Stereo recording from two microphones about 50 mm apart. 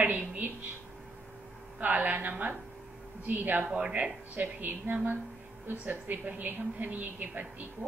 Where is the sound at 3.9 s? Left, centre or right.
Right.